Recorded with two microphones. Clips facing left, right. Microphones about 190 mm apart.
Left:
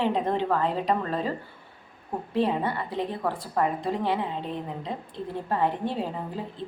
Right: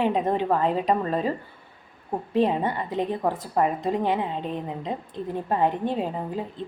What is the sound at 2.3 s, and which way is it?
A woman's voice, 15° right (ahead or behind).